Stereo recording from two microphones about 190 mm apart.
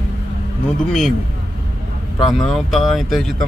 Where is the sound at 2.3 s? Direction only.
Centre (ahead or behind).